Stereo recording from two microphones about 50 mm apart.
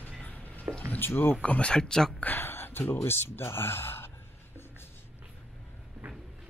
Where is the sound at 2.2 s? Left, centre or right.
Left.